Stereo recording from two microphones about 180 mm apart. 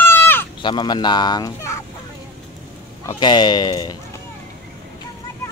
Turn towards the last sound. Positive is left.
turn(degrees=25)  # may be behind; listen again after turning